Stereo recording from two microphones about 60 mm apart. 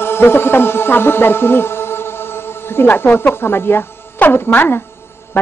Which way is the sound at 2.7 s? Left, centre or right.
Left.